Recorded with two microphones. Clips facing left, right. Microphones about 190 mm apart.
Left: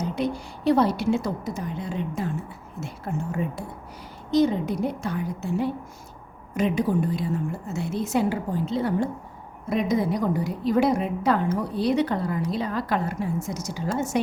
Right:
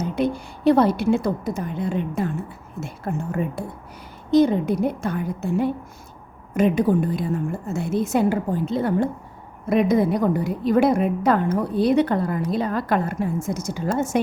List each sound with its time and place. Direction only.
0.0 s a woman's voice: 55° right (ahead or behind)